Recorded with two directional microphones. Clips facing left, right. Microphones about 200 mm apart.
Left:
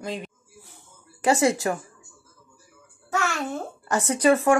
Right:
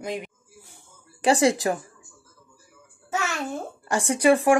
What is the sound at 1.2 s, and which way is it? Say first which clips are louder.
Speech: right 1 dB; 30° right (ahead or behind).